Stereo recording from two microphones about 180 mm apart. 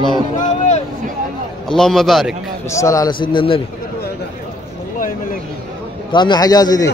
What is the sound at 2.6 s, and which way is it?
A man's voice, 15° left (ahead or behind).